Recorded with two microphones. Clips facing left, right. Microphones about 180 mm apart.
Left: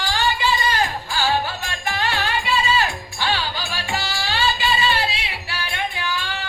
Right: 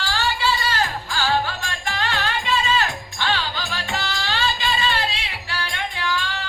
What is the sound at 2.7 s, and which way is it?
Music, 15° left (ahead or behind).